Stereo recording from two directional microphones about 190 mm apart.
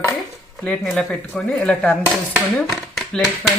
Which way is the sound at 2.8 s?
Centre (ahead or behind).